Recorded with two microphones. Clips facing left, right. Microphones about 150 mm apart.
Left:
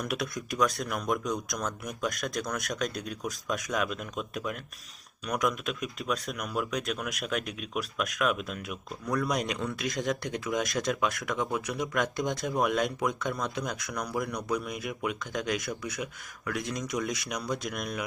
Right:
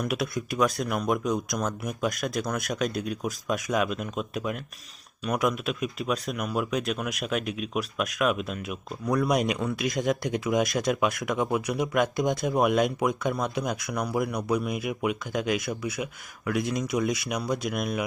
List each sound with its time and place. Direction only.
0.0 s speech: 5° right (ahead or behind)
9.0 s speech: 20° right (ahead or behind)
9.3 s speech: 10° right (ahead or behind)